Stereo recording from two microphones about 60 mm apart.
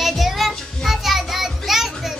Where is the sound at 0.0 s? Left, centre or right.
Centre.